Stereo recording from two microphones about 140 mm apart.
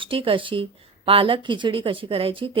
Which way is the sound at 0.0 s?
40° right (ahead or behind).